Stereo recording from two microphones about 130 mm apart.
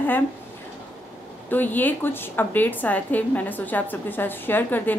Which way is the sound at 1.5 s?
15° left (ahead or behind).